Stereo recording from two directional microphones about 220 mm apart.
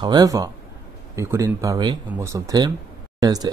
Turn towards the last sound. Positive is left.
turn(degrees=-15)  # may be behind; listen again after turning